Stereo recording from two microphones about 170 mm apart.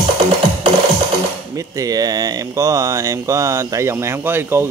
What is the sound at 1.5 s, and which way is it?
Speech, 20° right (ahead or behind).